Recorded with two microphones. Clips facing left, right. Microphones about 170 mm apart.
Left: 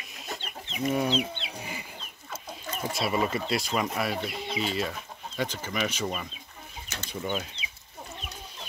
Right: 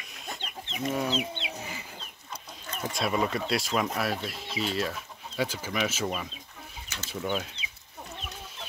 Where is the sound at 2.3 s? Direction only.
5° left (ahead or behind).